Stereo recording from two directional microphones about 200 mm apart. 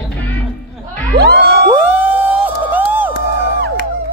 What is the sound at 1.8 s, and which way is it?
Music, 10° right (ahead or behind).